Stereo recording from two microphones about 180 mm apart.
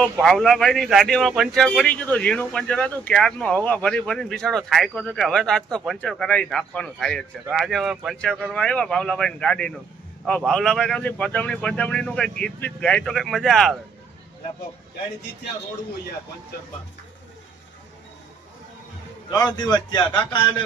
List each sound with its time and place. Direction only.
0.0 s speech: centre (ahead or behind)
19.3 s a man's voice: 25° left (ahead or behind)